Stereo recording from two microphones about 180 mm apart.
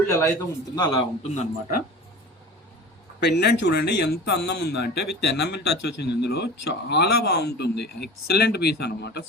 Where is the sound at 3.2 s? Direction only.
65° left (ahead or behind).